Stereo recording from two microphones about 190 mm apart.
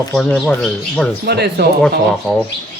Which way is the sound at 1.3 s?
60° right (ahead or behind).